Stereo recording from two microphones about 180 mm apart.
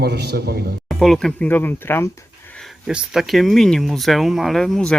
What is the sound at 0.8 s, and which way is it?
Speech, centre (ahead or behind).